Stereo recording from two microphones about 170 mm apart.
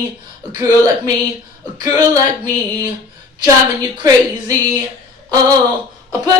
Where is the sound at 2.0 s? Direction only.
20° right (ahead or behind).